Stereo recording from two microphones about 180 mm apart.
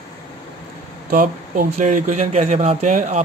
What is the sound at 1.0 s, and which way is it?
Speech, 50° right (ahead or behind).